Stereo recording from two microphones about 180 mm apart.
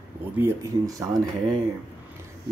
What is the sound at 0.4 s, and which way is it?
Speech, 20° right (ahead or behind).